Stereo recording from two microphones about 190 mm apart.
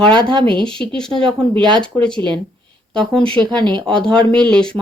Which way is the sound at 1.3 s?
5° left (ahead or behind).